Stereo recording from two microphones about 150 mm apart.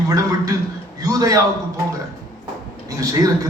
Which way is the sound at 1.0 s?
25° right (ahead or behind).